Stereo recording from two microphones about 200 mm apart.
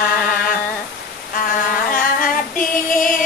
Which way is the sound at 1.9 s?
45° left (ahead or behind).